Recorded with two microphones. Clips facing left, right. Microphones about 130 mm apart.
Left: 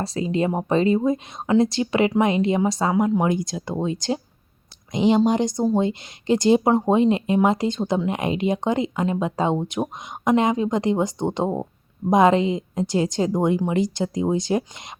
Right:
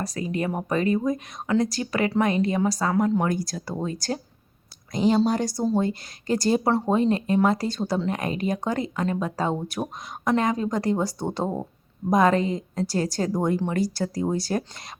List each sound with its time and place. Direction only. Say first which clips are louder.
0.0 s speech: left 5 dB; 25° left (ahead or behind)